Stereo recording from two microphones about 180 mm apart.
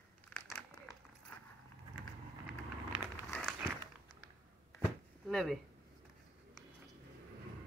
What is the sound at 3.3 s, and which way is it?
Walk, 5° left (ahead or behind).